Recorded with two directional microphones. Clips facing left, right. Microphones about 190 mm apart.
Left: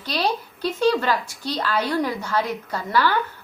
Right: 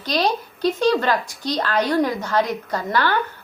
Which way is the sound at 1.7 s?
40° right (ahead or behind).